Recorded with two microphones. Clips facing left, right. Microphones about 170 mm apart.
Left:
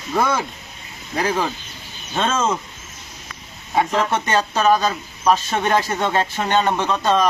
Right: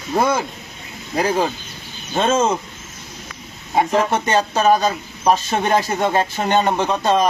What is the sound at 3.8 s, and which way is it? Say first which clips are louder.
Speech: right 2 dB; 20° right (ahead or behind).